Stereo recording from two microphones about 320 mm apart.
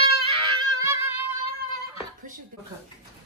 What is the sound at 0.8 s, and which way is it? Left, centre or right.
Music, centre.